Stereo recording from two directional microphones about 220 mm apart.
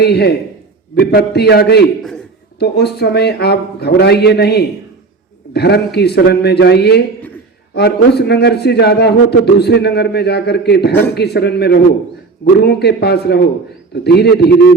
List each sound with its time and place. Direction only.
0.0 s a man's voice: 50° left (ahead or behind)
2.0 s a man's voice: centre (ahead or behind)
2.6 s a man's voice: 50° left (ahead or behind)